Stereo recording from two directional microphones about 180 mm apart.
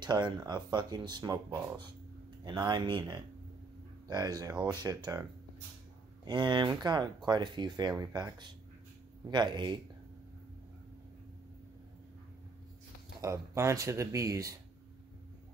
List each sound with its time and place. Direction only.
0.0 s speech: 25° right (ahead or behind)
6.2 s speech: 25° right (ahead or behind)
13.2 s speech: 15° right (ahead or behind)